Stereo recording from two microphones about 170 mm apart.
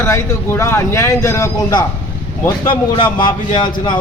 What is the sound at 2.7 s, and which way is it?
A man's voice, 30° left (ahead or behind).